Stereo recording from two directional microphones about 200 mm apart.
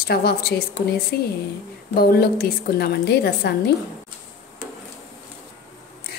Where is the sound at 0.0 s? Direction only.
50° left (ahead or behind).